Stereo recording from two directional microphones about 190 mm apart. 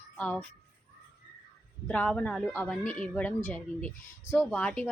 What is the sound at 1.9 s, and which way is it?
A woman's voice, 5° left (ahead or behind).